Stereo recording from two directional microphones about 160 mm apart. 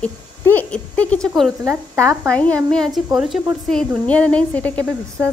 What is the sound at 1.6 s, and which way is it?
Speech, 20° right (ahead or behind).